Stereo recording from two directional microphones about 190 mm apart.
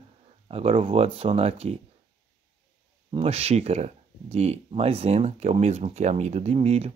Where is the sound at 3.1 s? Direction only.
30° right (ahead or behind).